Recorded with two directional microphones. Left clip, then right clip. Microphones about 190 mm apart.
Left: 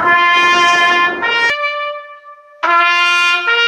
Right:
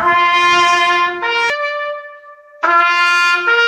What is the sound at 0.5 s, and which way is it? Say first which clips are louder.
Train: left 1 dB; 60° left (ahead or behind).